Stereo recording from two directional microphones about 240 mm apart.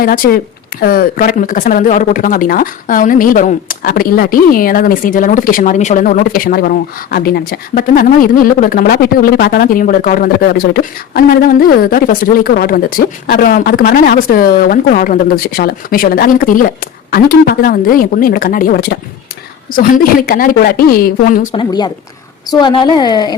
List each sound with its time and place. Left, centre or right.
0.0 s speech: left
21.5 s a woman's voice: centre